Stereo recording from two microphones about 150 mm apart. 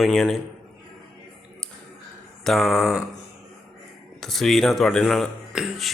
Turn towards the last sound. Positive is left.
turn(degrees=0)  # may be behind; listen again after turning